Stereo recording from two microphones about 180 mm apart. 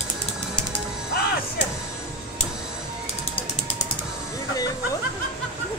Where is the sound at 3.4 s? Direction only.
30° left (ahead or behind).